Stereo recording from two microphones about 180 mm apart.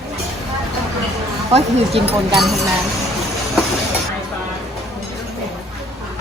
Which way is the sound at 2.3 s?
Centre (ahead or behind).